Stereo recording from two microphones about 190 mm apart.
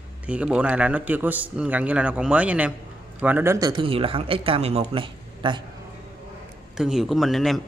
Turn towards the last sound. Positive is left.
turn(degrees=0)  # may be behind; listen again after turning